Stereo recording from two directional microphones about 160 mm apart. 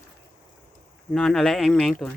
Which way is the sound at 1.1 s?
5° left (ahead or behind).